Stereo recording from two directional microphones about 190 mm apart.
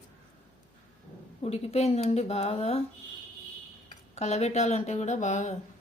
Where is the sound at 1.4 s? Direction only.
35° left (ahead or behind).